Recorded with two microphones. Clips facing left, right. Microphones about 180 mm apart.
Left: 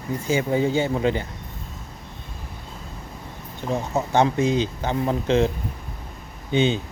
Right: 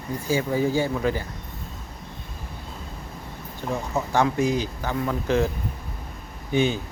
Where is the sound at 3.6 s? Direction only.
20° left (ahead or behind).